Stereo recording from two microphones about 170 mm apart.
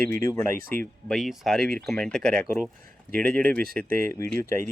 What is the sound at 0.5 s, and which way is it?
Speech, 55° right (ahead or behind).